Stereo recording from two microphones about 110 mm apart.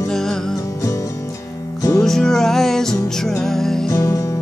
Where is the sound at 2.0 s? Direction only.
5° left (ahead or behind).